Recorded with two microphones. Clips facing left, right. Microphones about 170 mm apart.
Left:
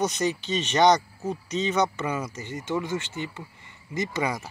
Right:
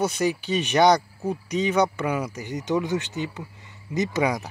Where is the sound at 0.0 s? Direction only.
10° right (ahead or behind).